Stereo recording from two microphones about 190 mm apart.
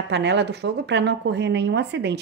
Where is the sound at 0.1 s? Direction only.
65° right (ahead or behind).